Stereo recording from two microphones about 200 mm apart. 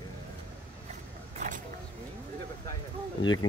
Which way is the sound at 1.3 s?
40° right (ahead or behind).